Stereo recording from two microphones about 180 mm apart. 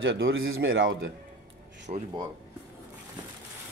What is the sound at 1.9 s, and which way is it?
Speech, 40° right (ahead or behind).